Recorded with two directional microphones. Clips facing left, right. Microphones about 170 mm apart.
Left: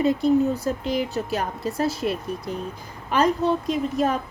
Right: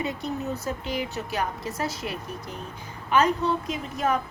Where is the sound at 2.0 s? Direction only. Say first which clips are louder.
Left 7 dB; 45° left (ahead or behind).